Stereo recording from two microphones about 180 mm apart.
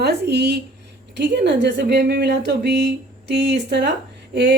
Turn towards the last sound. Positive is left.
turn(degrees=-70)  # may be behind; listen again after turning